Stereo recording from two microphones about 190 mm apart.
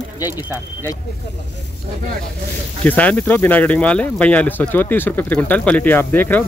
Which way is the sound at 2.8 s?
10° left (ahead or behind).